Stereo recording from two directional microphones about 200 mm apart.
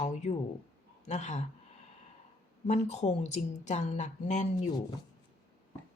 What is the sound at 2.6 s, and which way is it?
Speech, 35° left (ahead or behind).